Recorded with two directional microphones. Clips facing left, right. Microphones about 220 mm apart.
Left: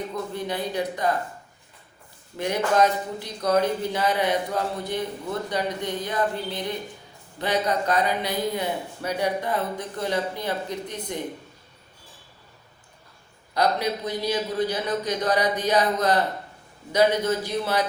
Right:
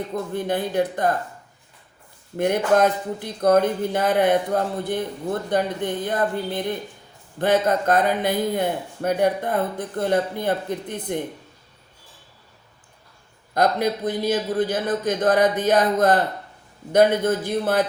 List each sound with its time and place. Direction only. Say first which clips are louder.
0.3 s speech: right 6 dB; 50° right (ahead or behind)
2.3 s speech: right 4 dB; 55° right (ahead or behind)
13.5 s speech: right 3 dB; 50° right (ahead or behind)